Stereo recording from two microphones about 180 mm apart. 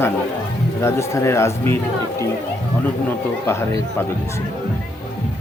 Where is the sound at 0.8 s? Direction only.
15° left (ahead or behind).